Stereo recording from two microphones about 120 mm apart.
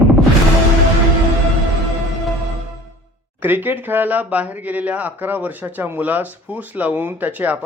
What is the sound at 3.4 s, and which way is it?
A man's voice, 15° right (ahead or behind).